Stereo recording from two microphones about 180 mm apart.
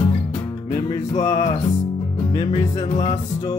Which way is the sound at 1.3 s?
40° left (ahead or behind).